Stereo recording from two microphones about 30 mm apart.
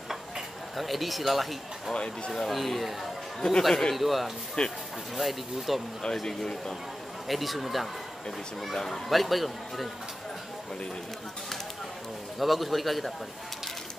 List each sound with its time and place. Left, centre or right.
0.7 s speech: centre
3.3 s speech: centre
3.9 s speech: centre
4.6 s speech: left
5.1 s speech: centre
6.2 s speech: left
7.2 s speech: centre
8.7 s speech: centre
9.1 s speech: centre
12.4 s speech: centre